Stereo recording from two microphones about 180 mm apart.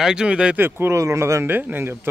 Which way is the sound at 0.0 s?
5° right (ahead or behind).